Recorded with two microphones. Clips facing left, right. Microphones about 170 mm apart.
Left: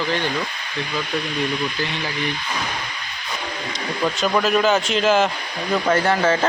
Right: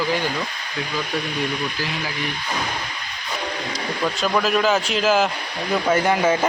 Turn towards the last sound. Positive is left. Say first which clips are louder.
# even
turn(degrees=-10)  # may be behind; listen again after turning